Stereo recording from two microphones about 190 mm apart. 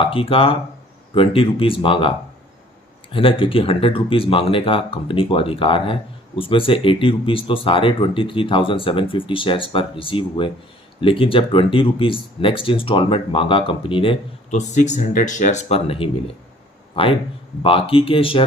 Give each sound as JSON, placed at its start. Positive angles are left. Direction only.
{"t": 0.0, "sound": "speech", "side_deg": 30}
{"t": 14.8, "sound": "speech", "side_deg": 40}